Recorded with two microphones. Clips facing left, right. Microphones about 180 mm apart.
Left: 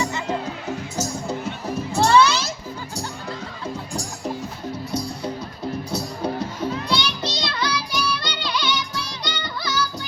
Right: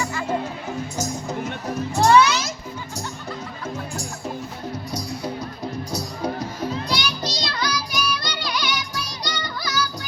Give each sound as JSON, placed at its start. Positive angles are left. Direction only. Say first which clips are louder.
{"t": 0.0, "sound": "music", "louder": "left 1 dB", "side_deg": 20}
{"t": 2.0, "sound": "music", "louder": "right 1 dB", "side_deg": 30}
{"t": 6.9, "sound": "music", "louder": "left 2 dB", "side_deg": 25}